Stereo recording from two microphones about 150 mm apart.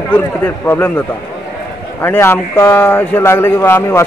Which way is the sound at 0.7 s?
15° left (ahead or behind).